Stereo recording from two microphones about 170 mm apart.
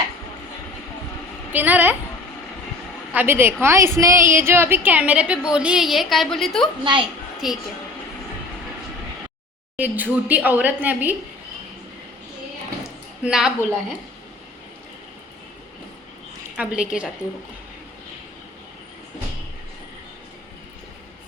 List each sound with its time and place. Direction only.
1.5 s a woman's voice: 10° right (ahead or behind)
3.1 s a woman's voice: 10° right (ahead or behind)
9.7 s a woman's voice: 10° right (ahead or behind)
13.2 s a woman's voice: 5° right (ahead or behind)
16.6 s a woman's voice: 5° right (ahead or behind)